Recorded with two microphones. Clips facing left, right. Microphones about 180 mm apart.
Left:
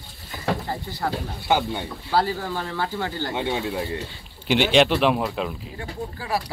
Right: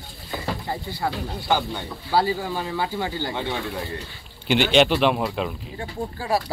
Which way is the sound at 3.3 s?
20° left (ahead or behind).